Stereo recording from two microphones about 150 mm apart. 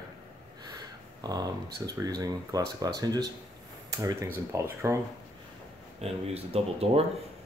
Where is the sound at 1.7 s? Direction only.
25° right (ahead or behind).